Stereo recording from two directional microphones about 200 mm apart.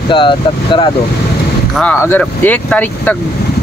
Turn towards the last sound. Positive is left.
turn(degrees=10)  # may be behind; listen again after turning